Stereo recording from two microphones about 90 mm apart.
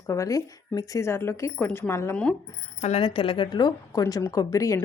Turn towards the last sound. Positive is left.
turn(degrees=40)  # may be behind; listen again after turning